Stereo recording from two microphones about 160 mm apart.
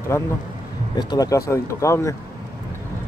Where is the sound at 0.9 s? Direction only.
25° left (ahead or behind).